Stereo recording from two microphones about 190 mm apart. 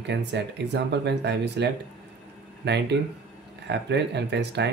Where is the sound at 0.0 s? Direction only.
65° right (ahead or behind).